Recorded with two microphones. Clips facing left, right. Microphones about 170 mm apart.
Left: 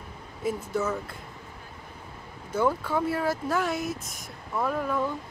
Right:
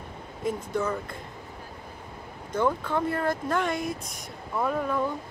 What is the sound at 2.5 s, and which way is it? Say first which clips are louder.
Speech: even; 10° left (ahead or behind).